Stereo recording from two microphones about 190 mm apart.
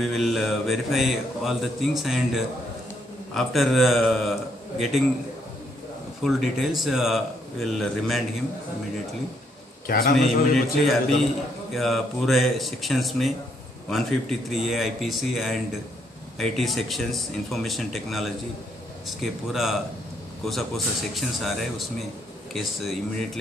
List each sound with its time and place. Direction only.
0.0 s speech: centre (ahead or behind)
6.2 s speech: centre (ahead or behind)
9.8 s a man's voice: 50° left (ahead or behind)
10.1 s speech: centre (ahead or behind)
14.5 s speech: centre (ahead or behind)